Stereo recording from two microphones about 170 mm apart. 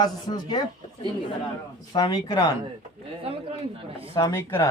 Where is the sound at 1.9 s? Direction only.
25° left (ahead or behind).